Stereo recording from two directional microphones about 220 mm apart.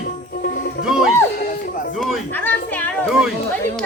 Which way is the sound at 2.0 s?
Centre (ahead or behind).